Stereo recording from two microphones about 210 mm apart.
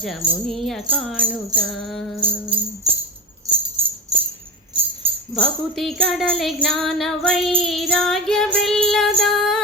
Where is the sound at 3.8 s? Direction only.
25° right (ahead or behind).